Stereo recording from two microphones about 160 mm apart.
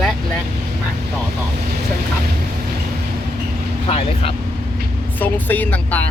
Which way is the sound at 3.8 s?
35° left (ahead or behind).